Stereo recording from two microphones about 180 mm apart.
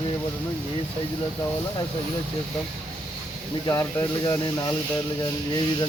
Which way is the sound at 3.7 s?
20° left (ahead or behind).